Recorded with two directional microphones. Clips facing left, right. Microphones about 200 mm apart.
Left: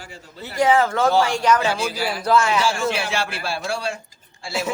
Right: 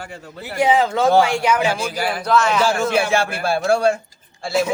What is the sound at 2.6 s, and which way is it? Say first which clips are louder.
A man's voice: right 4 dB; 50° right (ahead or behind).